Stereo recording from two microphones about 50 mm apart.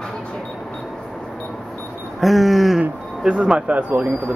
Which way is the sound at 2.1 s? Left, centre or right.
Centre.